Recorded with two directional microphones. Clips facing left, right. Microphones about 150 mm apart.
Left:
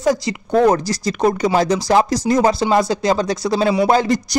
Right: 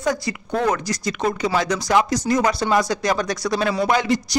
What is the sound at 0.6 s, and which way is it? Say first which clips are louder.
A man's voice: left 5 dB; 35° left (ahead or behind).